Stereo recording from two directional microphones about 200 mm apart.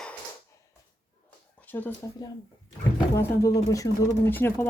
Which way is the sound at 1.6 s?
10° left (ahead or behind).